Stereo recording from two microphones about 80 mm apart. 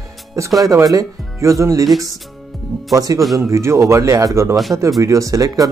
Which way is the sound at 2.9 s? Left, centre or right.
Right.